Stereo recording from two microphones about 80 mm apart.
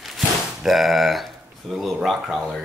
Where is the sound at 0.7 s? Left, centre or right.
Centre.